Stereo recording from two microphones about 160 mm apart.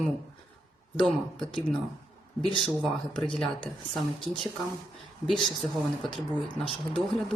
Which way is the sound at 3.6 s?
5° left (ahead or behind).